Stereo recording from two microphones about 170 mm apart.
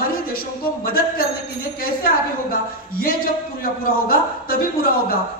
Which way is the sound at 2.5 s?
60° left (ahead or behind).